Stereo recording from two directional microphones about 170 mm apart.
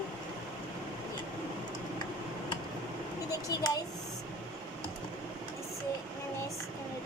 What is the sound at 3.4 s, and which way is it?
Speech, 20° left (ahead or behind).